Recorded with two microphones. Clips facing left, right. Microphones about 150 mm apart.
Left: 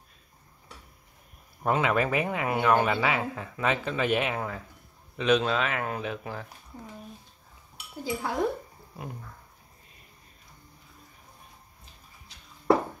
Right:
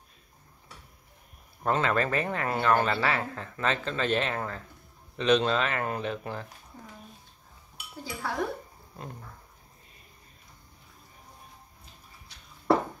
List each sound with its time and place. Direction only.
1.6 s speech: 10° left (ahead or behind)
8.0 s speech: 20° left (ahead or behind)